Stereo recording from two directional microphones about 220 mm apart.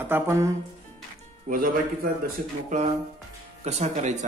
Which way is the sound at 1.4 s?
40° right (ahead or behind).